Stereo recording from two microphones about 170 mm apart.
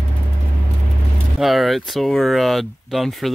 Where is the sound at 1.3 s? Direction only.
Centre (ahead or behind).